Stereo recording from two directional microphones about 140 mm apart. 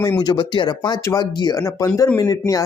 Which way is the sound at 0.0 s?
25° left (ahead or behind).